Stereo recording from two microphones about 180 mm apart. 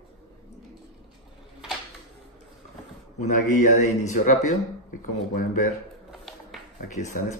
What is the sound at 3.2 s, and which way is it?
A man's voice, 40° left (ahead or behind).